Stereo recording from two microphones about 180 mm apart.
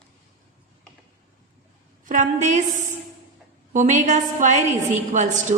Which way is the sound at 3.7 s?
45° right (ahead or behind).